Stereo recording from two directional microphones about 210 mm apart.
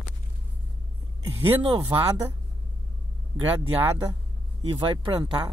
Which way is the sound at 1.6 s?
25° right (ahead or behind).